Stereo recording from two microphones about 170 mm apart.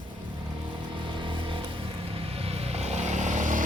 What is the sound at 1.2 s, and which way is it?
Vehicle, 30° right (ahead or behind).